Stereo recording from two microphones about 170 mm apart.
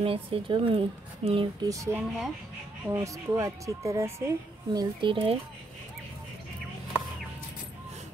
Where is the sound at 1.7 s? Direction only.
15° right (ahead or behind).